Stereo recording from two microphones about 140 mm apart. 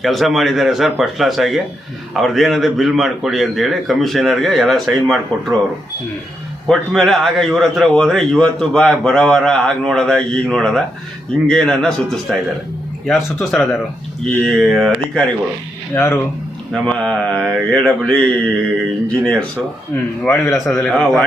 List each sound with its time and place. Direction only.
0.0 s a man's voice: centre (ahead or behind)
6.7 s a man's voice: centre (ahead or behind)
16.0 s a man's voice: 20° left (ahead or behind)
16.7 s a man's voice: 5° left (ahead or behind)
20.2 s a man's voice: 20° left (ahead or behind)
20.8 s a man's voice: 5° left (ahead or behind)